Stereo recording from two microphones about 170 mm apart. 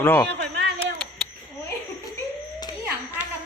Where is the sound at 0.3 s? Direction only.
90° right.